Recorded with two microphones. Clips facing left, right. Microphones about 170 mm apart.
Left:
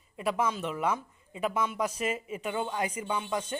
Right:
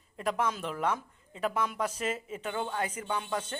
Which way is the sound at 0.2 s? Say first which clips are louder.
Left 1 dB; 5° left (ahead or behind).